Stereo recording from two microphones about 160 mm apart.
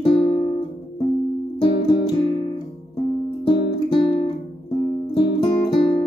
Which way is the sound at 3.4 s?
30° left (ahead or behind).